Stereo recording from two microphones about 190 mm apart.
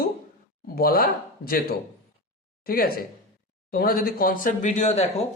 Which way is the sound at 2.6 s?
50° left (ahead or behind).